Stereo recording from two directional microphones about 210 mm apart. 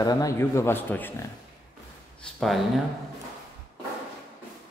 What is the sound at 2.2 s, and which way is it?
Speech, centre (ahead or behind).